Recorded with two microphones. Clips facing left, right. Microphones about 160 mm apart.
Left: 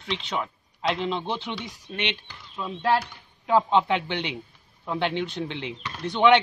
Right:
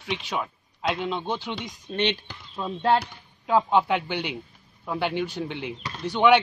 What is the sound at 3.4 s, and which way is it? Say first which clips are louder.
A man's voice: even; 10° right (ahead or behind).